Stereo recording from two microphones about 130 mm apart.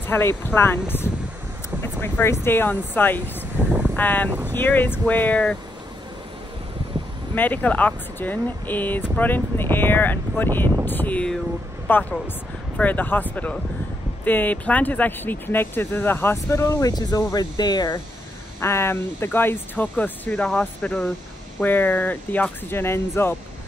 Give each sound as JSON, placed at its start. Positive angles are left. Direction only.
{"t": 0.0, "sound": "speech", "side_deg": 15}
{"t": 7.3, "sound": "speech", "side_deg": 15}
{"t": 18.6, "sound": "speech", "side_deg": 20}